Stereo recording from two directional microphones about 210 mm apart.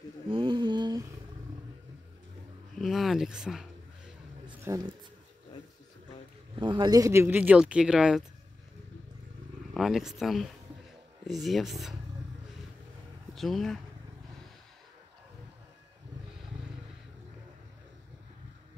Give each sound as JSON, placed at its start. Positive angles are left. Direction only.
{"t": 0.3, "sound": "a sound", "side_deg": -25}
{"t": 2.8, "sound": "speech", "side_deg": 0}
{"t": 4.6, "sound": "speech", "side_deg": -15}
{"t": 6.5, "sound": "speech", "side_deg": -25}
{"t": 9.8, "sound": "speech", "side_deg": 0}
{"t": 13.3, "sound": "speech", "side_deg": 0}